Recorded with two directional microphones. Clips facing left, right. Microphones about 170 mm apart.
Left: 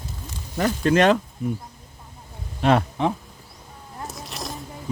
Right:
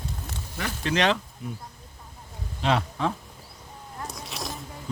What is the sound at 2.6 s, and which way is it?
Speech, 50° left (ahead or behind).